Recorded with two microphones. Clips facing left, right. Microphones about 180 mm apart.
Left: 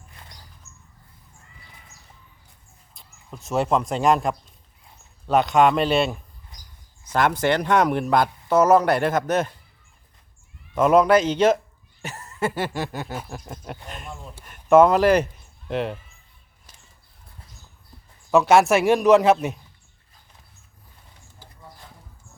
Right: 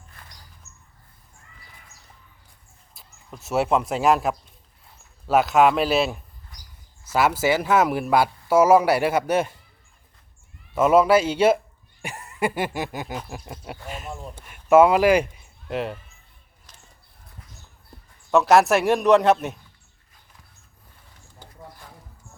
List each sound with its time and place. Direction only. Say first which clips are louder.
0.2 s a sound: left 1 dB; 25° left (ahead or behind)
2.9 s a man's voice: left 1 dB; 5° right (ahead or behind)
10.8 s speech: even; 5° right (ahead or behind)
12.0 s a sound: even; 15° right (ahead or behind)
13.1 s a man's voice: even; centre (ahead or behind)
18.3 s a man's voice: left 1 dB; centre (ahead or behind)